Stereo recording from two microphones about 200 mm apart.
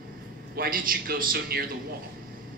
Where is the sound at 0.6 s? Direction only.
45° right (ahead or behind).